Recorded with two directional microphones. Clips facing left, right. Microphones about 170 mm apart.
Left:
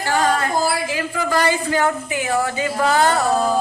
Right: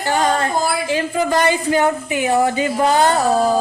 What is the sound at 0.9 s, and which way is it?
A woman's voice, 25° right (ahead or behind).